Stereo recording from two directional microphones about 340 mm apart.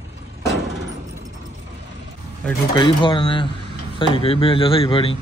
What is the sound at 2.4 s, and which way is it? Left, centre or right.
Speech, centre.